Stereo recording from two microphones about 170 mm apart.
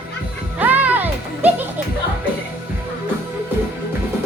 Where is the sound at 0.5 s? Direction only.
10° right (ahead or behind).